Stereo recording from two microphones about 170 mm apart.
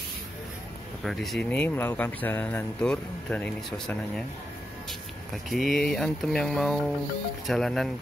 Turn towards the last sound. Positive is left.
turn(degrees=0)  # may be behind; listen again after turning